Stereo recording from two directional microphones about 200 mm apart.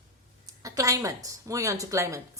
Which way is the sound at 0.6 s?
15° right (ahead or behind).